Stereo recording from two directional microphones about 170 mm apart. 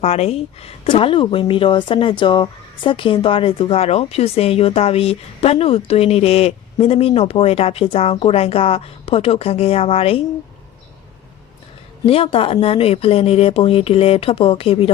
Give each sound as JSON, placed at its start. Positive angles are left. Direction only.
{"t": 0.0, "sound": "speech", "side_deg": 40}
{"t": 12.0, "sound": "speech", "side_deg": 35}